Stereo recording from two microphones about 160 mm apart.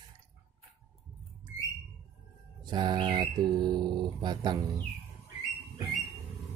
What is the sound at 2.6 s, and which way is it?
Speech, 25° right (ahead or behind).